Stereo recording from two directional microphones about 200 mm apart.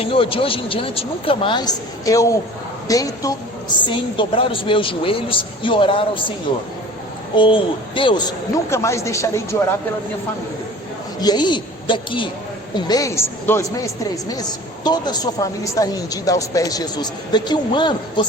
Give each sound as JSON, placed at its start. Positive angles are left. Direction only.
{"t": 0.0, "sound": "a woman's voice", "side_deg": 25}
{"t": 7.3, "sound": "a woman's voice", "side_deg": 25}
{"t": 8.7, "sound": "a woman's voice", "side_deg": 15}
{"t": 11.2, "sound": "a woman's voice", "side_deg": 20}